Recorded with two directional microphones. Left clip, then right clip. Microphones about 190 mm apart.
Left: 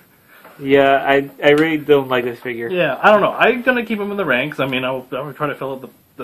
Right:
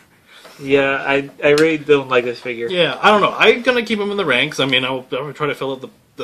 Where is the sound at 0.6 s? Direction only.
35° left (ahead or behind).